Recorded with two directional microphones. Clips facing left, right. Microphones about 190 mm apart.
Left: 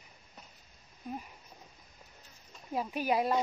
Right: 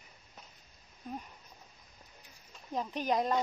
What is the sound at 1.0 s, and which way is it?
Speech, 10° left (ahead or behind).